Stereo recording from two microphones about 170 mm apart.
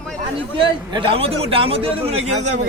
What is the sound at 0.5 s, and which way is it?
A man's voice, 30° right (ahead or behind).